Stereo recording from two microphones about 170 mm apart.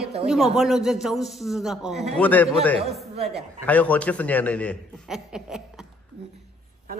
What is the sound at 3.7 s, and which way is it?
A man's voice, 10° left (ahead or behind).